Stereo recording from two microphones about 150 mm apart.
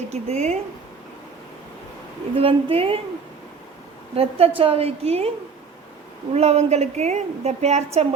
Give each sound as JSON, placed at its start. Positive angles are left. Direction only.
{"t": 0.1, "sound": "a woman's voice", "side_deg": -45}
{"t": 2.3, "sound": "a woman's voice", "side_deg": -35}
{"t": 4.1, "sound": "a woman's voice", "side_deg": -40}
{"t": 6.3, "sound": "a woman's voice", "side_deg": -45}